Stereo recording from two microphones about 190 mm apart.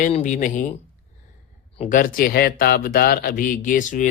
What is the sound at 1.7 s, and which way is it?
Speech, 40° left (ahead or behind).